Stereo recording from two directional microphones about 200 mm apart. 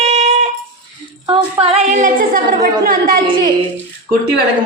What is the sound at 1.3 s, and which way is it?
A woman's voice, 35° right (ahead or behind).